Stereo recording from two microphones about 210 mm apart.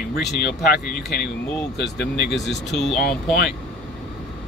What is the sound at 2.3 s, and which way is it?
Speech, centre (ahead or behind).